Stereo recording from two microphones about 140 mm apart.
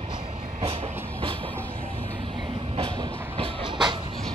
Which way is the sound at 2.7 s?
40° right (ahead or behind).